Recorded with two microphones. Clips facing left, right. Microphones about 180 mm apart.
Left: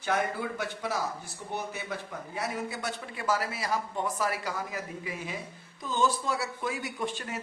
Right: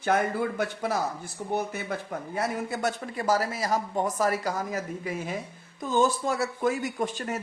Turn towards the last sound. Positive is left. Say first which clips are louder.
# right 5 dB
turn(degrees=-45)  # may be behind; listen again after turning